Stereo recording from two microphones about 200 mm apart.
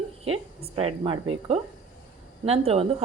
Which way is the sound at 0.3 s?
30° right (ahead or behind).